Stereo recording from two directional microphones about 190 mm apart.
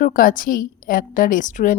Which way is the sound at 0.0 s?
45° left (ahead or behind).